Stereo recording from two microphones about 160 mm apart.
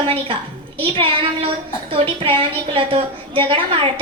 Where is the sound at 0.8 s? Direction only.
35° right (ahead or behind).